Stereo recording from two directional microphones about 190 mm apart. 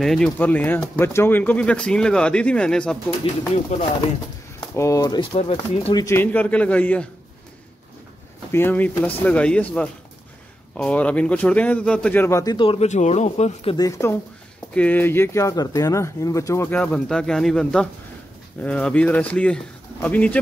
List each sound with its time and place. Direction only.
0.0 s speech: 5° left (ahead or behind)
4.6 s speech: 15° left (ahead or behind)
6.0 s speech: 10° left (ahead or behind)
8.5 s speech: 10° left (ahead or behind)
10.8 s speech: 5° left (ahead or behind); by 13.7 s 35° left (ahead or behind)
13.7 s speech: 15° left (ahead or behind)